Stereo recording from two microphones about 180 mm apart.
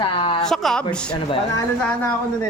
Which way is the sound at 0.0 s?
30° left (ahead or behind).